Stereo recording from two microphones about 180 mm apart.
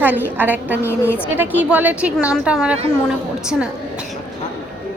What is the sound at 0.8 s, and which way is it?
Speech, 10° left (ahead or behind).